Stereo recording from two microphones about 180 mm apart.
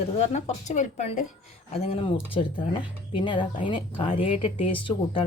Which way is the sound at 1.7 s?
30° left (ahead or behind).